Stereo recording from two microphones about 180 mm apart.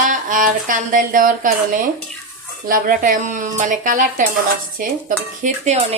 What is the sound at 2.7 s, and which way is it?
Speech, 50° right (ahead or behind).